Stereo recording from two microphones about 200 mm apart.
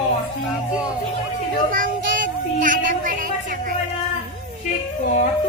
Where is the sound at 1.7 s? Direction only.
45° right (ahead or behind).